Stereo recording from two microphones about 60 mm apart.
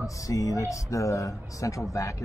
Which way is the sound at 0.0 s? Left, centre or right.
Left.